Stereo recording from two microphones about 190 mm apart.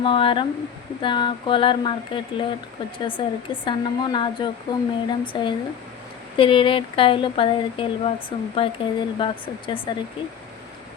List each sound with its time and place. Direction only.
0.0 s speech: 25° left (ahead or behind)